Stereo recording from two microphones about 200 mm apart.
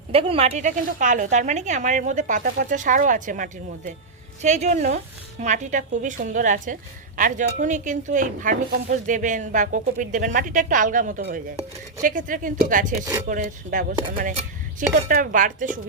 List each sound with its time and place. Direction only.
0.1 s speech: 30° right (ahead or behind)